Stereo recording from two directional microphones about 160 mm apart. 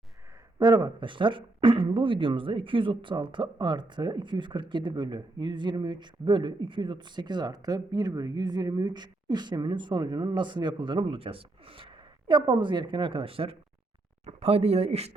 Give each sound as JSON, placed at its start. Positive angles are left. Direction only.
{"t": 0.6, "sound": "speech", "side_deg": -30}